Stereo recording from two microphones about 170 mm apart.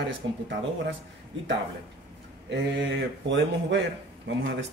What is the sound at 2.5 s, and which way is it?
Speech, 90° right.